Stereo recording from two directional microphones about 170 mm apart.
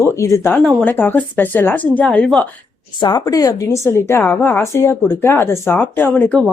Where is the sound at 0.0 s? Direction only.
15° left (ahead or behind).